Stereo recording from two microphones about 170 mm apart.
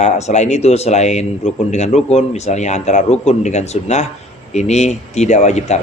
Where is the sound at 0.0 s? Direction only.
40° left (ahead or behind).